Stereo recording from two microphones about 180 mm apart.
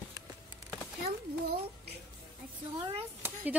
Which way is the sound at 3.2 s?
10° right (ahead or behind).